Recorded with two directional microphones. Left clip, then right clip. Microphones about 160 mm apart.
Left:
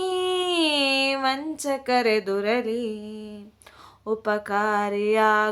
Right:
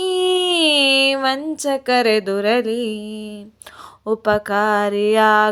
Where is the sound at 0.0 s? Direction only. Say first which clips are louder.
Right 7 dB; 35° right (ahead or behind).